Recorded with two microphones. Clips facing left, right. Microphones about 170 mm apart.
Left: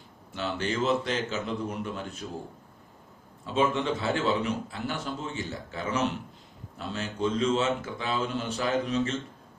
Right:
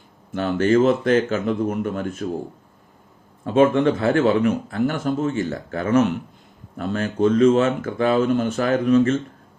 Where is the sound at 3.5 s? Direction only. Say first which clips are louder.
Right 10 dB; 50° right (ahead or behind).